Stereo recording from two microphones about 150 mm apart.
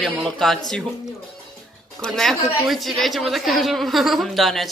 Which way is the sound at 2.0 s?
Centre (ahead or behind).